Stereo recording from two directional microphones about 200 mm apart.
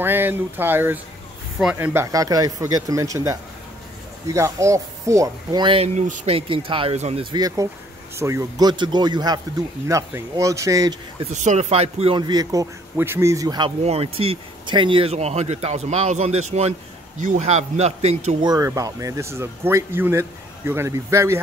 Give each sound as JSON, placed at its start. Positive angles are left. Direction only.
{"t": 0.0, "sound": "speech", "side_deg": -10}
{"t": 11.3, "sound": "speech", "side_deg": -35}
{"t": 13.8, "sound": "speech", "side_deg": -30}
{"t": 18.4, "sound": "speech", "side_deg": -20}